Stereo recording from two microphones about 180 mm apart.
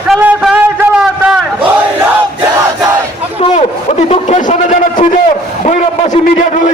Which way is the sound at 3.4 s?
35° left (ahead or behind).